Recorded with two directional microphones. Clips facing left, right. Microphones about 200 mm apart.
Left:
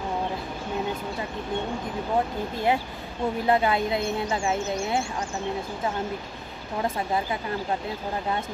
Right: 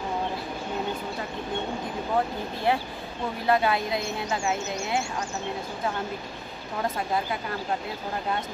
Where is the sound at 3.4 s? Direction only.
20° left (ahead or behind).